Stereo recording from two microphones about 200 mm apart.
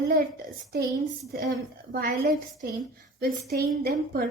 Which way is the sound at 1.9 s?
45° right (ahead or behind).